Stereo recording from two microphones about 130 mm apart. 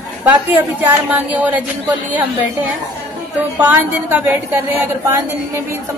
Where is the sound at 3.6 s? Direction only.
15° right (ahead or behind).